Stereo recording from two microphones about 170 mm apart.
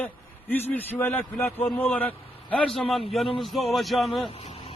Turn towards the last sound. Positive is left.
turn(degrees=35)  # may be behind; listen again after turning